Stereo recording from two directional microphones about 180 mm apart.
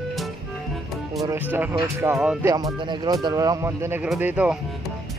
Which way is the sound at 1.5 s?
15° right (ahead or behind).